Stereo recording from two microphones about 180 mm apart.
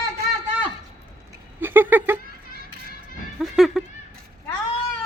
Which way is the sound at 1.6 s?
10° right (ahead or behind).